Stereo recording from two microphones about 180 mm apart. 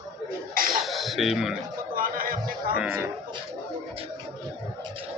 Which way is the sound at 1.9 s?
50° right (ahead or behind).